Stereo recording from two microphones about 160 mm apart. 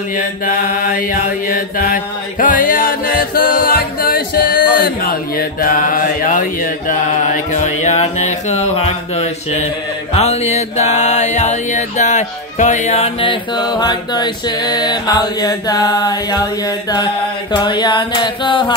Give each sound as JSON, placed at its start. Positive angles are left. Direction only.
{"t": 0.2, "sound": "mantra", "side_deg": 60}
{"t": 10.1, "sound": "a sound", "side_deg": 40}
{"t": 16.9, "sound": "chant", "side_deg": 30}